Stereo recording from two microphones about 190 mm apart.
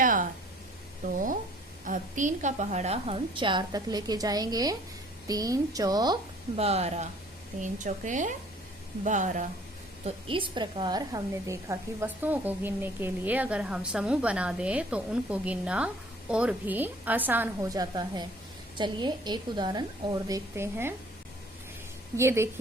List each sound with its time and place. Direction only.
0.0 s a sound: 45° right (ahead or behind)
1.8 s a woman's voice: 40° right (ahead or behind); by 6.1 s 20° right (ahead or behind)
6.6 s a woman's voice: 35° right (ahead or behind)
10.2 s a woman's voice: 25° right (ahead or behind)
22.2 s a woman's voice: 15° right (ahead or behind)